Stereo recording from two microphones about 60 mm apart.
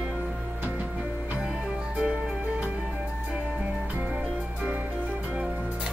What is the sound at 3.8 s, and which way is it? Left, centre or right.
Music, right.